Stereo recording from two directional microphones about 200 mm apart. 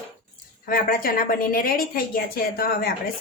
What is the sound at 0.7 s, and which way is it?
A woman's voice, 45° left (ahead or behind).